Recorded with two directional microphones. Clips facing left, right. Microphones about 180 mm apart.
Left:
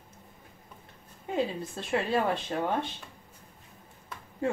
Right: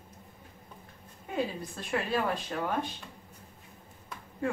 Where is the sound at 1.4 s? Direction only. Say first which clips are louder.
Left 2 dB; 25° left (ahead or behind).